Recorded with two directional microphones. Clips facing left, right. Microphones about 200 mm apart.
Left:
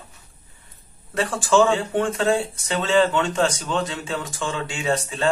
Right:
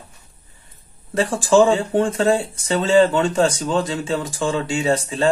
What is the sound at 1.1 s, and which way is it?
Speech, 30° right (ahead or behind).